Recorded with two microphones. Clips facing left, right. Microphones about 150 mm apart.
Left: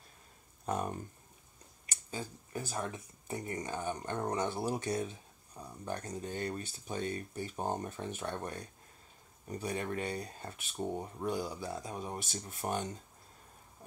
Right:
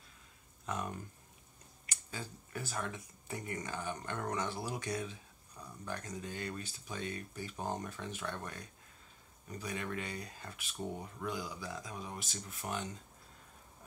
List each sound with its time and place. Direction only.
0.7 s speech: 40° left (ahead or behind)
1.9 s speech: 20° left (ahead or behind); by 12.9 s 35° left (ahead or behind)